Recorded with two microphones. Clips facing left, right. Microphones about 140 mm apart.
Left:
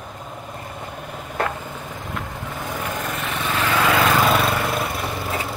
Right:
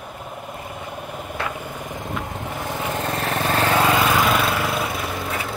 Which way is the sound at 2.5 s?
20° right (ahead or behind).